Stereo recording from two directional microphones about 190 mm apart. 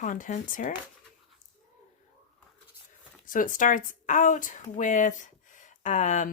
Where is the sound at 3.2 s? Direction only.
45° left (ahead or behind).